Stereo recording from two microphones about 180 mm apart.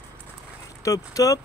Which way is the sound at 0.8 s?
20° left (ahead or behind).